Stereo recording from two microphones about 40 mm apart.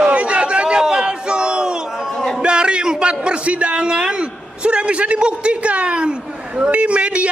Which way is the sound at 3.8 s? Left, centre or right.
Centre.